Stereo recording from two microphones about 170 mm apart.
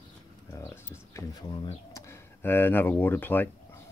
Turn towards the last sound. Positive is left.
turn(degrees=10)  # may be behind; listen again after turning